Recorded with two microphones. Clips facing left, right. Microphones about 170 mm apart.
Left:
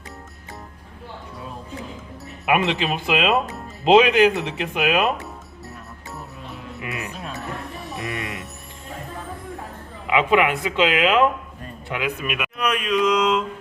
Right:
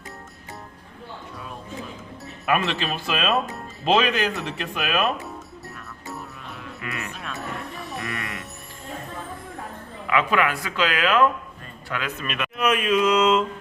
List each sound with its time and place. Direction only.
2.5 s speech: 20° left (ahead or behind)
6.7 s music: 20° left (ahead or behind)
7.3 s music: centre (ahead or behind)
10.1 s a man's voice: 20° left (ahead or behind)
12.5 s mantra: 5° right (ahead or behind)